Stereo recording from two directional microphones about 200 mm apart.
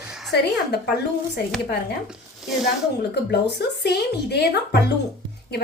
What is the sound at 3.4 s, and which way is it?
A woman's voice, 55° left (ahead or behind).